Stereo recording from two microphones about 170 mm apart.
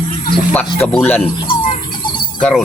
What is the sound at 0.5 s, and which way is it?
Speech, 10° left (ahead or behind).